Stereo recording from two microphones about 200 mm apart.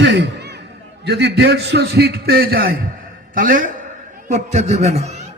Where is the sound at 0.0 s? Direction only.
60° right (ahead or behind).